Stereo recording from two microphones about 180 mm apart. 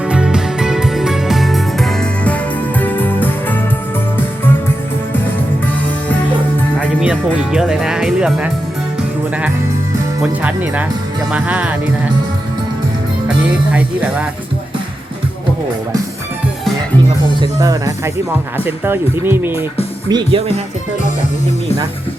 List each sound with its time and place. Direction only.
0.1 s music: 5° right (ahead or behind)
7.0 s speech: 5° right (ahead or behind)
10.2 s speech: 10° right (ahead or behind)
13.2 s speech: 5° right (ahead or behind)
17.4 s speech: 20° right (ahead or behind)
20.1 s speech: 25° right (ahead or behind)